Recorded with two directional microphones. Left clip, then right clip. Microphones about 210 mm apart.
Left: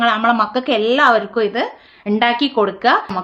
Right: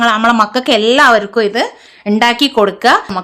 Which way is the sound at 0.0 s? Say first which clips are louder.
Right 4 dB; 25° right (ahead or behind).